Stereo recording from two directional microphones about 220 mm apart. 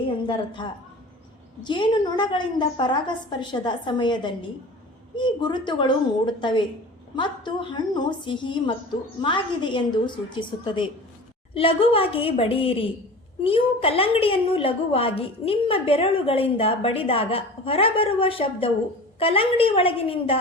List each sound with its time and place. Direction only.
0.2 s a woman's voice: 20° left (ahead or behind)